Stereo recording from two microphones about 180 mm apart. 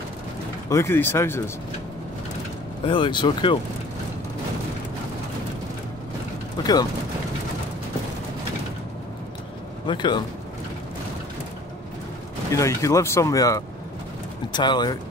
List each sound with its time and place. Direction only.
0.7 s speech: 15° left (ahead or behind)
2.8 s speech: 30° left (ahead or behind)
6.6 s speech: 20° left (ahead or behind)
9.8 s speech: 25° left (ahead or behind)
12.4 s speech: 15° left (ahead or behind)